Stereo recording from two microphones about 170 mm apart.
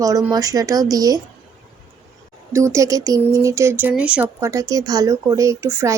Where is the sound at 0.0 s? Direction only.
20° right (ahead or behind).